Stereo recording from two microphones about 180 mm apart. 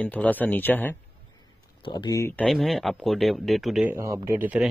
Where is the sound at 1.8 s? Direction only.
20° left (ahead or behind).